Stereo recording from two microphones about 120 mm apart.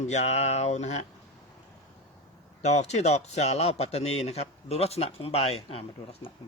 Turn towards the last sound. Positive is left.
turn(degrees=55)  # may be behind; listen again after turning